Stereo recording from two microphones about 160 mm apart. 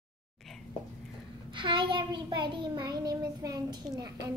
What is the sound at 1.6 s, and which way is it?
A child's voice, 30° right (ahead or behind).